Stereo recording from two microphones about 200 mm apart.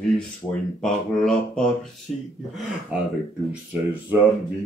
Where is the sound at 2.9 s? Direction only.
5° right (ahead or behind).